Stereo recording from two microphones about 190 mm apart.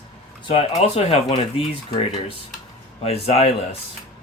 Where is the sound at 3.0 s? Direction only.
30° left (ahead or behind).